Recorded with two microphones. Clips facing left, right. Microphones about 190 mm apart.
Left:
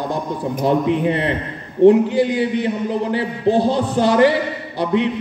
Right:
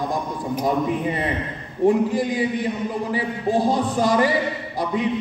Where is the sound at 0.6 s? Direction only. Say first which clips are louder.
Left 5 dB; 70° left (ahead or behind).